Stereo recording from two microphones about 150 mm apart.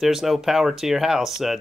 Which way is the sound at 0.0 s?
Centre (ahead or behind).